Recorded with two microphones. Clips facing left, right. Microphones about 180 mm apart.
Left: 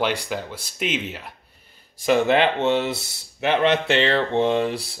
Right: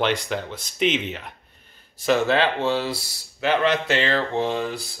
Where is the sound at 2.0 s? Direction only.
15° left (ahead or behind).